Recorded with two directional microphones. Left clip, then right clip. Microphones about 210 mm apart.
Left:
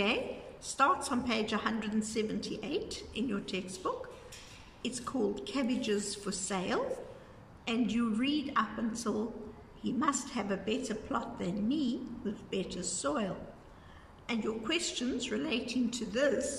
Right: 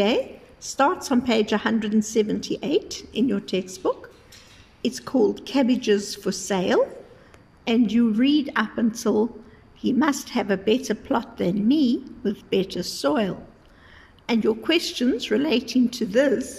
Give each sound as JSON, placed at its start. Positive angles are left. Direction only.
{"t": 1.0, "sound": "a woman's voice", "side_deg": -40}